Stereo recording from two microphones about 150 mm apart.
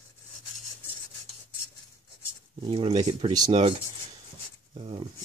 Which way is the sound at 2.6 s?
35° right (ahead or behind).